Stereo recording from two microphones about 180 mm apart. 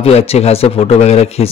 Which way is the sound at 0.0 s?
35° left (ahead or behind).